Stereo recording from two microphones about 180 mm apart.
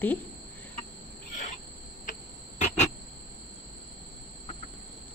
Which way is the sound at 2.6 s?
40° left (ahead or behind).